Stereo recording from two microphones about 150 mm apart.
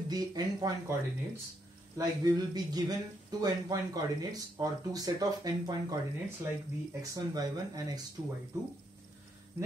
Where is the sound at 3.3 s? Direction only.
25° right (ahead or behind).